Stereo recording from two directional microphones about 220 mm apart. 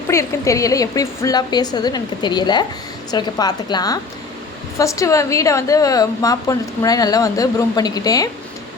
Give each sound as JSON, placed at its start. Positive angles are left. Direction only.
{"t": 0.1, "sound": "a woman's voice", "side_deg": 15}